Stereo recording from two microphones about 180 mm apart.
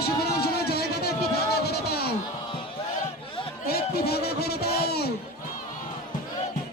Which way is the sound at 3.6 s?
60° left (ahead or behind).